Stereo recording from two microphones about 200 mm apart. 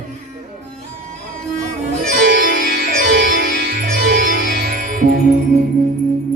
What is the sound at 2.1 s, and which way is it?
Music, 45° right (ahead or behind).